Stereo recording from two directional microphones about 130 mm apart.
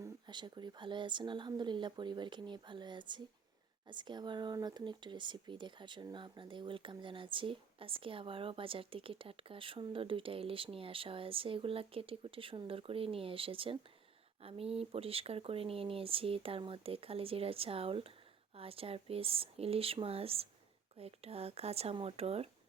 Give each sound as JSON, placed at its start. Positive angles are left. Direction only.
{"t": 0.3, "sound": "speech", "side_deg": -35}